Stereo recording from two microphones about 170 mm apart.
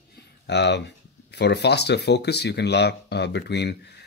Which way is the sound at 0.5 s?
90° left.